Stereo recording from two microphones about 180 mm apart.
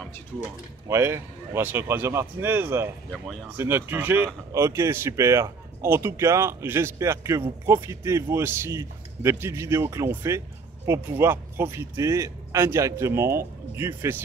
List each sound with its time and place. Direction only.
0.8 s speech: 15° right (ahead or behind)